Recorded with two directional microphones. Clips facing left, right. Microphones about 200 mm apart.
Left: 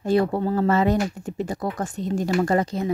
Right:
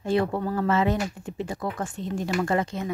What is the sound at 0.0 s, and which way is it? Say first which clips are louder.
Speech: left 4 dB; 40° left (ahead or behind).